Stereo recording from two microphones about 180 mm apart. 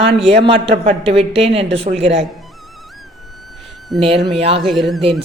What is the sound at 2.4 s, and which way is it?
Music, centre (ahead or behind).